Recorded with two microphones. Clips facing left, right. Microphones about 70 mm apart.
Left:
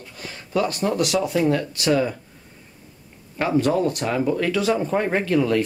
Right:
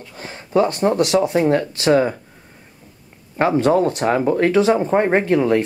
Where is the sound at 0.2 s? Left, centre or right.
Right.